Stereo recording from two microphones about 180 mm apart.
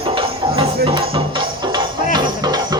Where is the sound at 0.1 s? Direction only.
30° right (ahead or behind).